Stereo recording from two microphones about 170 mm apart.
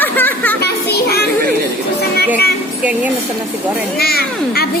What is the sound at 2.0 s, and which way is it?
Music, 70° left (ahead or behind).